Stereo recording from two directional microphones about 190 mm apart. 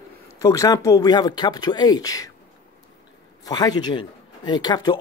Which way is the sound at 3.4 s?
20° left (ahead or behind).